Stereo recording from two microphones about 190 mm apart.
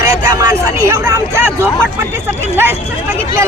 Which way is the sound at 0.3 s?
15° right (ahead or behind).